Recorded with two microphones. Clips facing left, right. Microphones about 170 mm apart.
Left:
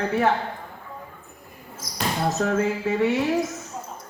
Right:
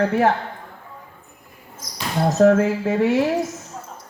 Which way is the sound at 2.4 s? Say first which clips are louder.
Right 10 dB; 55° right (ahead or behind).